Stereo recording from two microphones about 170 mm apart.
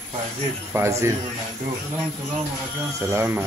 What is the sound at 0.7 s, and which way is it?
Speech, 15° right (ahead or behind).